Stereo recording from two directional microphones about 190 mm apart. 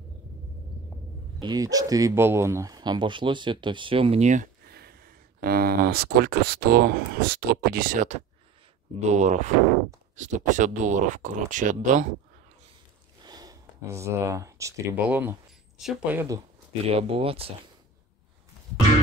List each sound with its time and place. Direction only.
1.4 s speech: 20° right (ahead or behind); by 4.5 s 40° right (ahead or behind)
4.6 s speech: 55° right (ahead or behind)
13.2 s speech: 20° right (ahead or behind)
16.9 s speech: 30° right (ahead or behind)